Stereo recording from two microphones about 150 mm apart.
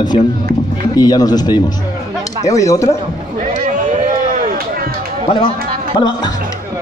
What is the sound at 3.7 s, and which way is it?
Run, 60° right (ahead or behind).